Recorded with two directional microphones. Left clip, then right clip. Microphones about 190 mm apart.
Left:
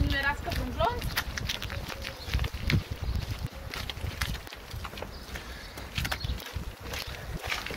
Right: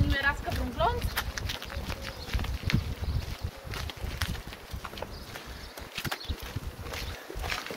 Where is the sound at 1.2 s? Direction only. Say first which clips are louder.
Left 1 dB; 10° left (ahead or behind).